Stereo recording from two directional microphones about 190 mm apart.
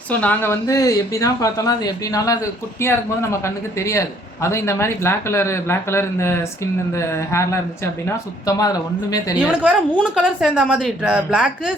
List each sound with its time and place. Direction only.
0.1 s speech: 10° left (ahead or behind)
9.4 s a woman's voice: 5° left (ahead or behind)